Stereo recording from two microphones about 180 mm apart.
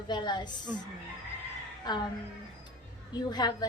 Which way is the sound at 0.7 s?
10° right (ahead or behind).